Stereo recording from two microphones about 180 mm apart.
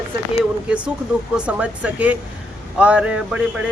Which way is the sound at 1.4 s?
5° right (ahead or behind).